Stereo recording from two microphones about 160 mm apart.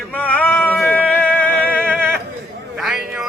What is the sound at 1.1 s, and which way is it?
Music, 10° left (ahead or behind).